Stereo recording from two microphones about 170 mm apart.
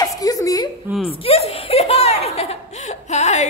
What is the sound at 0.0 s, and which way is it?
Whimper, 20° left (ahead or behind).